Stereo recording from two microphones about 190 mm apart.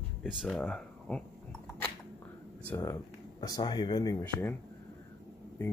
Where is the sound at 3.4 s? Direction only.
20° left (ahead or behind).